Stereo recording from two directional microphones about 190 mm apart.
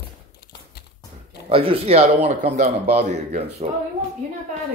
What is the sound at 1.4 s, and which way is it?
A man's voice, 30° right (ahead or behind).